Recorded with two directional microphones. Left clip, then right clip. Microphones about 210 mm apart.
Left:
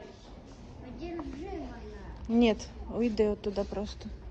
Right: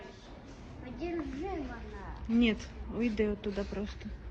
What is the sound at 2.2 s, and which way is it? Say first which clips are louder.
A woman's voice: left 4 dB; 15° left (ahead or behind).